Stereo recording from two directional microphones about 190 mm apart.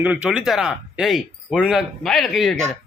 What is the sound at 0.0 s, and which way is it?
Speech, 5° right (ahead or behind).